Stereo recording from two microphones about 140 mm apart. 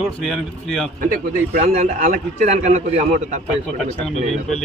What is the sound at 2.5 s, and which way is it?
Speech, 55° right (ahead or behind).